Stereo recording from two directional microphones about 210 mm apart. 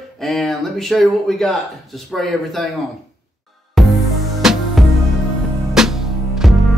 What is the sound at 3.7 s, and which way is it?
Music, centre (ahead or behind).